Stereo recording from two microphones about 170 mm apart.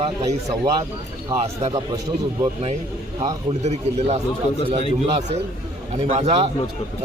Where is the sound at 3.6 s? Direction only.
40° right (ahead or behind).